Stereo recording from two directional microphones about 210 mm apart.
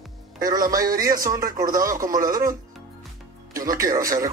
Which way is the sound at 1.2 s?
15° right (ahead or behind).